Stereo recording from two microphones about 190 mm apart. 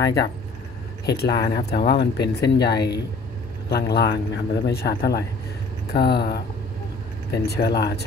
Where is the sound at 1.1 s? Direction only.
55° left (ahead or behind).